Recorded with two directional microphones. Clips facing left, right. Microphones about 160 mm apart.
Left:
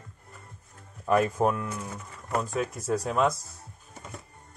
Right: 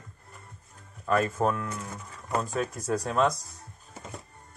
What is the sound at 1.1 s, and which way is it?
Speech, 15° left (ahead or behind).